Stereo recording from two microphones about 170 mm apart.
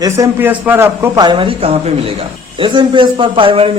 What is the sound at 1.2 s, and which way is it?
A man's voice, 30° right (ahead or behind).